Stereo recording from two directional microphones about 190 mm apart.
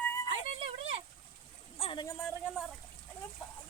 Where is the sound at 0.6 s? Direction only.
30° right (ahead or behind).